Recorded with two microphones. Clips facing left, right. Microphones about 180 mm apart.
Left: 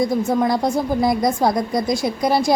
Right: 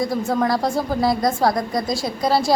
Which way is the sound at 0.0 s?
20° left (ahead or behind).